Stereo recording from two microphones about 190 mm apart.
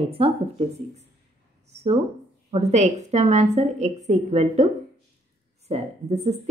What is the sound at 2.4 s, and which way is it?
A woman's voice, 35° right (ahead or behind).